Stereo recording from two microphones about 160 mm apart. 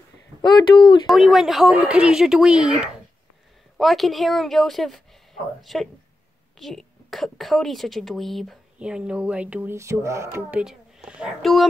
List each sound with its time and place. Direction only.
0.4 s speech: 30° left (ahead or behind)
1.0 s a woman's voice: centre (ahead or behind); by 10.6 s 15° right (ahead or behind)
10.6 s speech: 5° right (ahead or behind)